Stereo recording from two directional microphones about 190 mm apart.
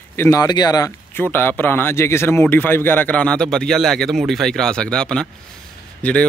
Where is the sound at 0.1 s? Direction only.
15° left (ahead or behind).